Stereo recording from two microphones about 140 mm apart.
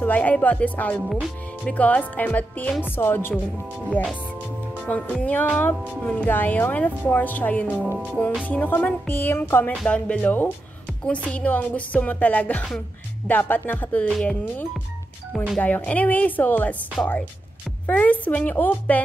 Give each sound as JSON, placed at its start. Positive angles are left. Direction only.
{"t": 0.0, "sound": "speech", "side_deg": 10}
{"t": 17.8, "sound": "speech", "side_deg": 10}